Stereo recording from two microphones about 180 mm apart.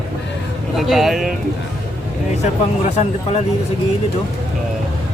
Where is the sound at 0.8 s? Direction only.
Centre (ahead or behind).